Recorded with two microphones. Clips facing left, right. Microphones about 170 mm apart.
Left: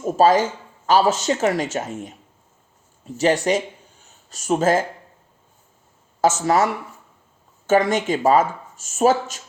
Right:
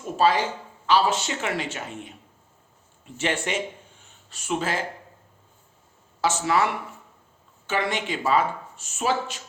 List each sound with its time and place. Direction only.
0.0 s speech: 45° left (ahead or behind)
4.0 s a sound: 40° left (ahead or behind)
6.2 s speech: 40° left (ahead or behind)
7.7 s speech: 45° left (ahead or behind)